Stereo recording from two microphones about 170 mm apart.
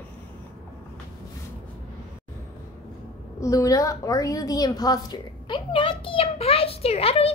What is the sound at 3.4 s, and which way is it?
A woman's voice, 20° left (ahead or behind).